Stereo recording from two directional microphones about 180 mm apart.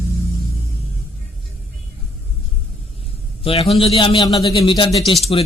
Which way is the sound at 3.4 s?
35° left (ahead or behind).